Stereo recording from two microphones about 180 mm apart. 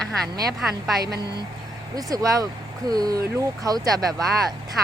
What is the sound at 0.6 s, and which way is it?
Speech, centre (ahead or behind).